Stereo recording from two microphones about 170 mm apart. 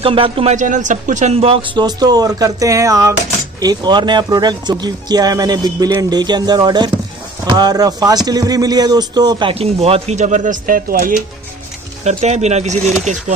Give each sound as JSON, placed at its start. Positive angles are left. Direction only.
{"t": 0.0, "sound": "speech", "side_deg": -30}
{"t": 0.6, "sound": "speech", "side_deg": -45}
{"t": 1.9, "sound": "speech", "side_deg": -25}
{"t": 12.0, "sound": "speech", "side_deg": -40}